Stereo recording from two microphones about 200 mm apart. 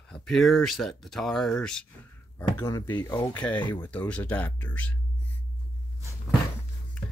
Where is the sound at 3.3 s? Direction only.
10° left (ahead or behind).